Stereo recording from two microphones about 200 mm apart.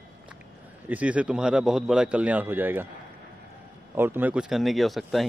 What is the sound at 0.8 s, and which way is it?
A man's voice, 5° right (ahead or behind).